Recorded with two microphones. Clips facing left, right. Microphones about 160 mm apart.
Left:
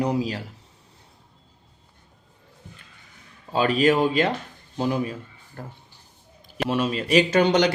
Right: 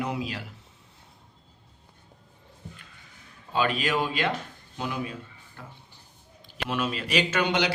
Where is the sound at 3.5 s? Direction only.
40° left (ahead or behind).